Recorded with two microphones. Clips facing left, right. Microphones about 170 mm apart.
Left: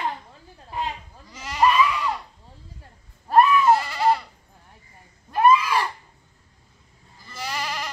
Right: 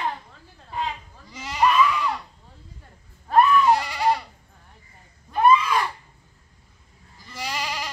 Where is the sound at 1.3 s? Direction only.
10° right (ahead or behind).